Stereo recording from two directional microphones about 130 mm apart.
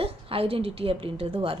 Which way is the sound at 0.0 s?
45° right (ahead or behind).